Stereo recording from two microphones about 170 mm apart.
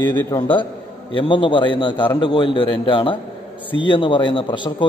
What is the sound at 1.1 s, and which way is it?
A man's voice, 30° left (ahead or behind).